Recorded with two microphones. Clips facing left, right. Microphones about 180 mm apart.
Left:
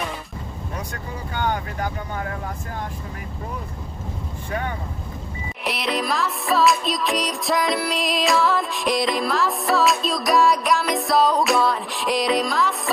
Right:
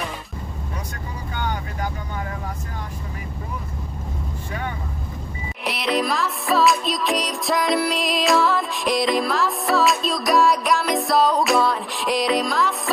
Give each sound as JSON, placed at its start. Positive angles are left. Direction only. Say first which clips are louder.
{"t": 1.3, "sound": "speech", "louder": "left 4 dB", "side_deg": 55}
{"t": 4.5, "sound": "speech", "louder": "left 3 dB", "side_deg": 50}
{"t": 5.6, "sound": "music", "louder": "right 2 dB", "side_deg": 0}